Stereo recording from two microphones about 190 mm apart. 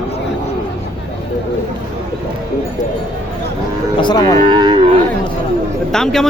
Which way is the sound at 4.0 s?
20° left (ahead or behind).